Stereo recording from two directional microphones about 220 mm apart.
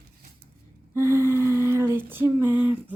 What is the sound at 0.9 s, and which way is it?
Speech, 10° right (ahead or behind).